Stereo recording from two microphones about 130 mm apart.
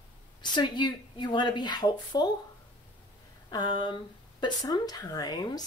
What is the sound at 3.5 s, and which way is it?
A woman's voice, 35° left (ahead or behind).